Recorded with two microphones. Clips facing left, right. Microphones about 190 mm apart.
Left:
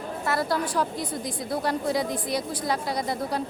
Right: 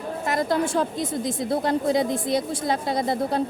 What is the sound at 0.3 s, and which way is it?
A woman's voice, 20° right (ahead or behind).